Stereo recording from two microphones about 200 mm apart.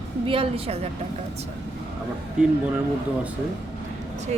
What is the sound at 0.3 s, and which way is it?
Speech, 25° right (ahead or behind).